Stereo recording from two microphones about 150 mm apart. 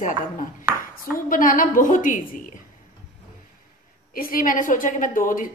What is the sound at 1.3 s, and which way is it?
Speech, 65° left (ahead or behind).